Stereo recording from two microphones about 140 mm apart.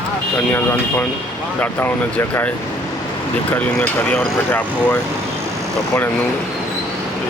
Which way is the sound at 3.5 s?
10° left (ahead or behind).